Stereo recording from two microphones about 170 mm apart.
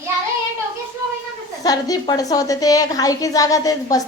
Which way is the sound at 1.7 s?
20° left (ahead or behind).